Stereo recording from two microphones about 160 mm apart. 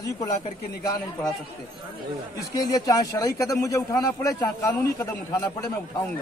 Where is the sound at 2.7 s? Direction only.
20° left (ahead or behind).